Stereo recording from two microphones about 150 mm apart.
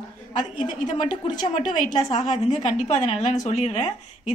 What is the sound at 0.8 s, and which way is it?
A woman's voice, 55° left (ahead or behind).